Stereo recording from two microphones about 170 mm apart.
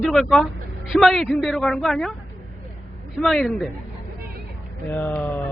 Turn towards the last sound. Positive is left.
turn(degrees=10)  # may be behind; listen again after turning